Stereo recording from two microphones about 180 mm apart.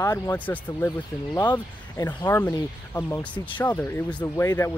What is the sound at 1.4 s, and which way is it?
Speech, 20° left (ahead or behind).